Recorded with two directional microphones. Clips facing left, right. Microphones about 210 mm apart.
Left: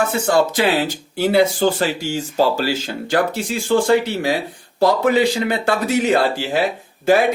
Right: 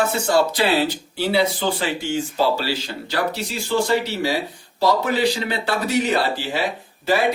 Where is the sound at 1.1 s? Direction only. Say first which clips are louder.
Left 5 dB; 45° left (ahead or behind).